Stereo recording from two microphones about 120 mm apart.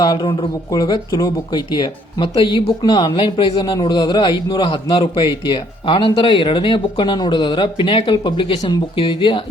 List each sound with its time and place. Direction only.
0.0 s speech: 40° left (ahead or behind)